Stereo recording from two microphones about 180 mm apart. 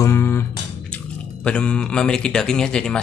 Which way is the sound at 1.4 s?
5° left (ahead or behind).